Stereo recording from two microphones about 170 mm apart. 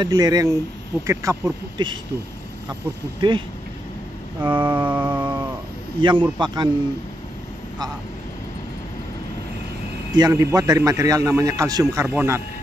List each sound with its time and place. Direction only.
0.0 s a man's voice: 25° right (ahead or behind)
1.8 s a man's voice: 25° right (ahead or behind)
3.2 s a man's voice: 30° right (ahead or behind)
4.5 s a man's voice: 25° right (ahead or behind)
4.8 s music: 10° right (ahead or behind)
5.9 s a man's voice: 30° right (ahead or behind)
10.1 s a man's voice: 20° right (ahead or behind)